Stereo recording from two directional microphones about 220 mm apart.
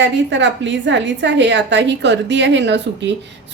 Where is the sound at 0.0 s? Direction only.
55° right (ahead or behind).